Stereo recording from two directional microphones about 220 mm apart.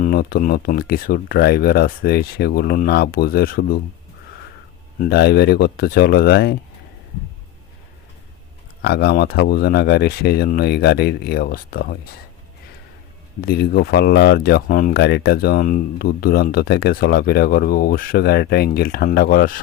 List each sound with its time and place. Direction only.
0.0 s speech: 40° left (ahead or behind)
5.0 s speech: 45° left (ahead or behind)
8.8 s speech: 45° left (ahead or behind)
13.4 s speech: 45° left (ahead or behind)